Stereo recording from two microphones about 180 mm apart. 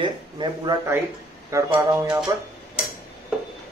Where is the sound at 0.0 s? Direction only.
25° right (ahead or behind).